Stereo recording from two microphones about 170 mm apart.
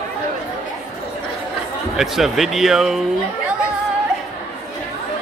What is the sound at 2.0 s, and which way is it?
Speech, centre (ahead or behind).